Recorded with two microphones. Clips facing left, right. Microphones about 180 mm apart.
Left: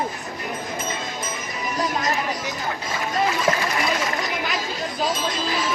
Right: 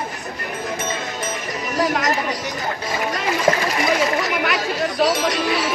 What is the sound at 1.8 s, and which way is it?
Chatter, 75° right (ahead or behind).